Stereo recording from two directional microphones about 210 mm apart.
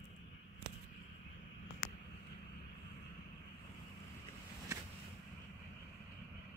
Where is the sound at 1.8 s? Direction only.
40° left (ahead or behind).